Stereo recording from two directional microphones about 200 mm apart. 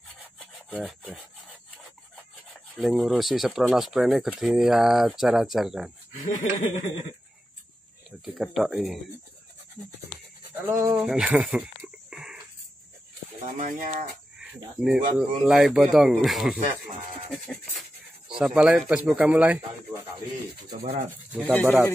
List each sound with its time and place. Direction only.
0.2 s rub: 5° right (ahead or behind)
2.7 s speech: centre (ahead or behind)
6.1 s laughter: 40° left (ahead or behind)
8.4 s speech: centre (ahead or behind)
10.5 s a sound: 10° right (ahead or behind)
13.6 s speech: 40° right (ahead or behind)
14.4 s cricket: 5° right (ahead or behind)
15.1 s speech: 5° right (ahead or behind)
17.3 s a sound: centre (ahead or behind)
18.3 s speech: 5° right (ahead or behind)
21.1 s speech: 10° right (ahead or behind)